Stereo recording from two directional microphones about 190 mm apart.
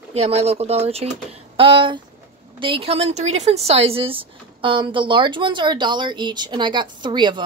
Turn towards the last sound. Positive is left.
turn(degrees=-25)  # may be behind; listen again after turning